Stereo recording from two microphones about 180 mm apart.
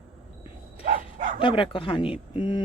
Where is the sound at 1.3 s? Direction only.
30° left (ahead or behind).